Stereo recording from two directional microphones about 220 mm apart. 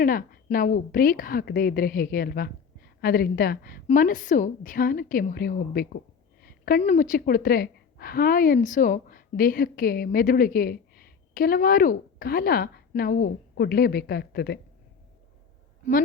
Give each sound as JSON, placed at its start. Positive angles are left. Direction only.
{"t": 0.0, "sound": "a woman's voice", "side_deg": 40}